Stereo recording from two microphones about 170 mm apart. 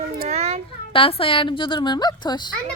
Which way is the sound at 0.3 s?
40° right (ahead or behind).